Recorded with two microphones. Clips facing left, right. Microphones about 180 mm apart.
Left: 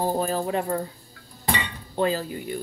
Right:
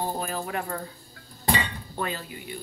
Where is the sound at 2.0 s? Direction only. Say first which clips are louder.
Left 8 dB; 35° left (ahead or behind).